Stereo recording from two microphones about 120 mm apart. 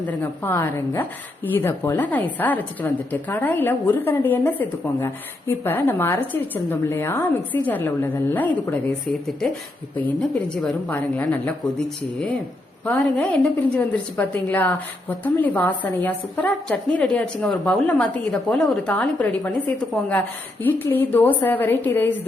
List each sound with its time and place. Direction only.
0.0 s a woman's voice: 15° left (ahead or behind)
10.0 s a woman's voice: 10° left (ahead or behind)
12.8 s a woman's voice: 10° left (ahead or behind)
19.2 s a woman's voice: 15° left (ahead or behind)